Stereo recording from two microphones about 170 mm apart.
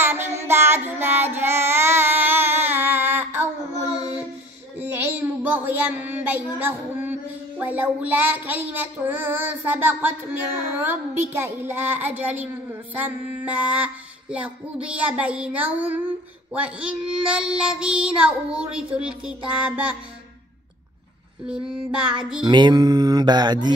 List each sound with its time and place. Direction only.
0.0 s child singing: 15° right (ahead or behind)
4.7 s a child's voice: 10° right (ahead or behind)
10.9 s music: 15° right (ahead or behind)
17.3 s child singing: 5° right (ahead or behind)
21.5 s child singing: 5° right (ahead or behind)
22.4 s music: 25° right (ahead or behind)